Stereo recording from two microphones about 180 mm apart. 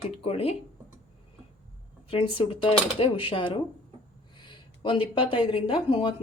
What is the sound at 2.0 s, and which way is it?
A woman's voice, 30° left (ahead or behind).